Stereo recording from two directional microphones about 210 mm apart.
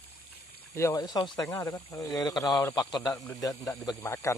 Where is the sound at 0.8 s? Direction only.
15° left (ahead or behind).